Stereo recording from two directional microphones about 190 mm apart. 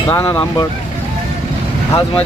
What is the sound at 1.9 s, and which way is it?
Speech, 30° left (ahead or behind).